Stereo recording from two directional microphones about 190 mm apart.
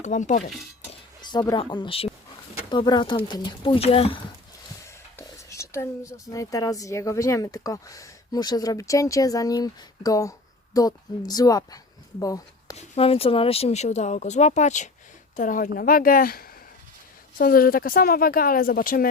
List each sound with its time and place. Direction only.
0.0 s speech: 40° left (ahead or behind)
1.2 s speech: 20° left (ahead or behind)
5.1 s speech: 15° left (ahead or behind)
12.7 s speech: 30° left (ahead or behind); by 19.0 s 50° left (ahead or behind)